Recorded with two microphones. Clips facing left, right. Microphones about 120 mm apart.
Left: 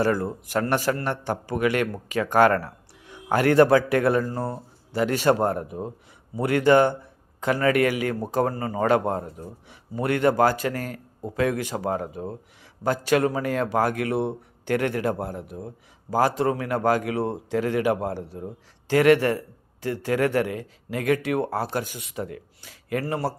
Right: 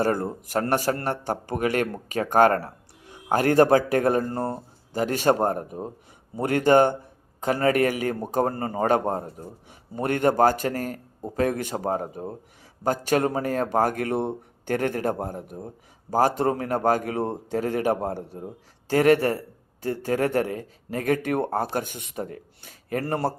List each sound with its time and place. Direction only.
0.0 s a man's voice: 45° right (ahead or behind); by 9.5 s 30° right (ahead or behind)
9.6 s a man's voice: 45° right (ahead or behind)